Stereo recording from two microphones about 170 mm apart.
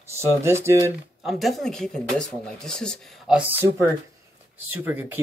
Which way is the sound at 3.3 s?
10° right (ahead or behind).